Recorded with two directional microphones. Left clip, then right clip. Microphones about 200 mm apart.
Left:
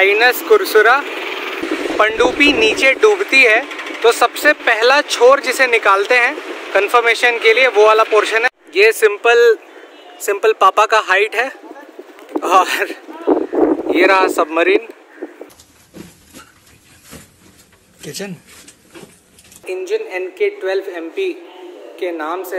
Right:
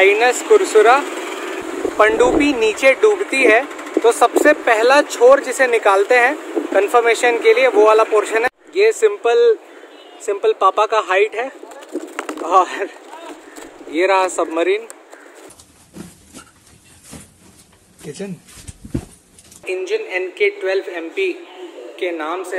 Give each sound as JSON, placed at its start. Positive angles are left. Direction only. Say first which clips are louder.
{"t": 0.0, "sound": "speech", "louder": "left 1 dB", "side_deg": 0}
{"t": 1.1, "sound": "vehicle", "louder": "left 3 dB", "side_deg": -55}
{"t": 2.0, "sound": "speech", "louder": "even", "side_deg": -5}
{"t": 13.9, "sound": "speech", "louder": "left 2 dB", "side_deg": -5}
{"t": 19.6, "sound": "speech", "louder": "left 1 dB", "side_deg": 5}